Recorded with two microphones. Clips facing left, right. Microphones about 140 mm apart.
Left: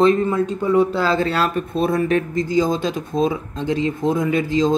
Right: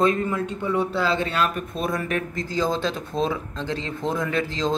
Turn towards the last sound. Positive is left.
turn(degrees=15)  # may be behind; listen again after turning